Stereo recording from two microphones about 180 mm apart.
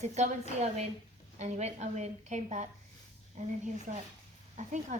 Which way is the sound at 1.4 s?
40° right (ahead or behind).